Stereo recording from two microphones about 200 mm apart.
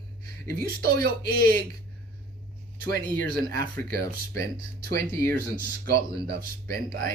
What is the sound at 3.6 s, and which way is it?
Speech, 45° right (ahead or behind).